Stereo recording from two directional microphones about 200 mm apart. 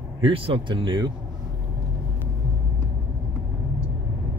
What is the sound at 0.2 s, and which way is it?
Speech, 25° right (ahead or behind).